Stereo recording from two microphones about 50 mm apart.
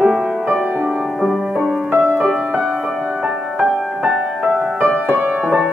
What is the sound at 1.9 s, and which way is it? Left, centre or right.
Music, right.